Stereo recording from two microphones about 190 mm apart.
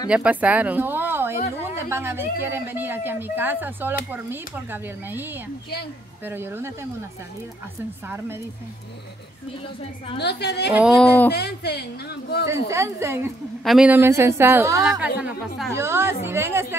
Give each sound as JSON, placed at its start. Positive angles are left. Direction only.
{"t": 0.1, "sound": "a woman's voice", "side_deg": -5}
{"t": 10.1, "sound": "speech", "side_deg": 60}
{"t": 10.7, "sound": "speech", "side_deg": -5}
{"t": 11.3, "sound": "speech", "side_deg": 60}
{"t": 12.6, "sound": "a woman's voice", "side_deg": -15}
{"t": 15.1, "sound": "a woman's voice", "side_deg": -5}